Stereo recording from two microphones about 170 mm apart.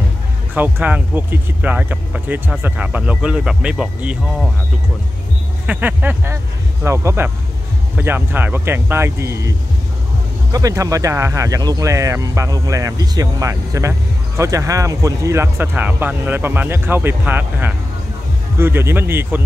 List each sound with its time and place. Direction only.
0.6 s speech: 10° right (ahead or behind)
5.7 s speech: 10° right (ahead or behind)
10.5 s speech: 20° right (ahead or behind)